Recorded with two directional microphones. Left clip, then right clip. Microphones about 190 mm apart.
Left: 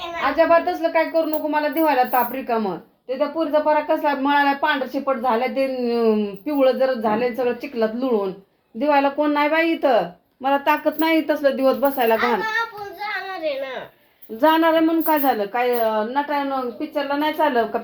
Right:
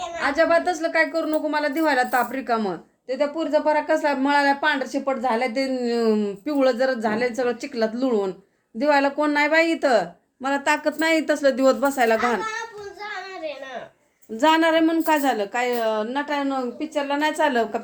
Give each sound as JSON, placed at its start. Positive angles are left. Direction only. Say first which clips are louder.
{"t": 0.2, "sound": "a woman's voice", "louder": "left 3 dB", "side_deg": -25}
{"t": 14.4, "sound": "a woman's voice", "louder": "left 2 dB", "side_deg": -20}